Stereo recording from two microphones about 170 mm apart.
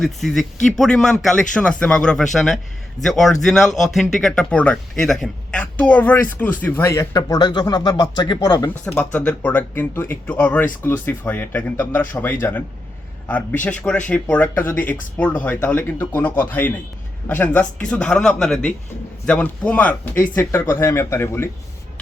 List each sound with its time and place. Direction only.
0.0 s speech: centre (ahead or behind); by 8.7 s 20° left (ahead or behind)
8.8 s speech: 5° left (ahead or behind)